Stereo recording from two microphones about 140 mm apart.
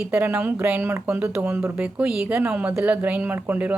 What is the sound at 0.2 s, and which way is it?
Speech, 15° right (ahead or behind).